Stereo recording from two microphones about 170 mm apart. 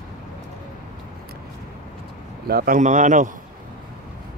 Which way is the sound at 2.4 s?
60° right (ahead or behind).